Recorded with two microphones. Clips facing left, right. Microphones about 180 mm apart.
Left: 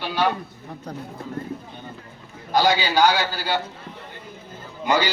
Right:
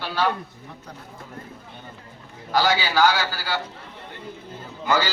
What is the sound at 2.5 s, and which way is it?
A man's voice, 20° left (ahead or behind).